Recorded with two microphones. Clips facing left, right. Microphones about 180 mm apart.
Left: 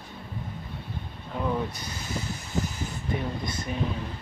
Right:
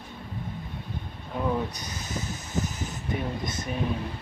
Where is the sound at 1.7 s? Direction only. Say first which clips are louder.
Left 1 dB; 20° right (ahead or behind).